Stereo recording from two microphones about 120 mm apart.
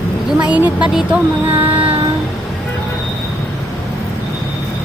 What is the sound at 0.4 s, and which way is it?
Speech, 10° right (ahead or behind).